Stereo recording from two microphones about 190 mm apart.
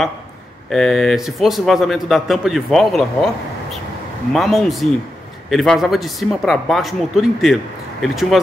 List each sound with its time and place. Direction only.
0.7 s a man's voice: centre (ahead or behind)
4.3 s a man's voice: centre (ahead or behind)